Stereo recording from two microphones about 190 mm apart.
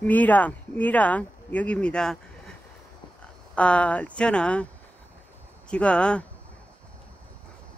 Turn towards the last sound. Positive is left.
turn(degrees=5)  # may be behind; listen again after turning